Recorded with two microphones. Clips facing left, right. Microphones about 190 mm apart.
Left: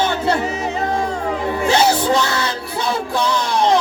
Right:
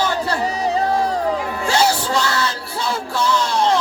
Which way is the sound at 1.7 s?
20° left (ahead or behind).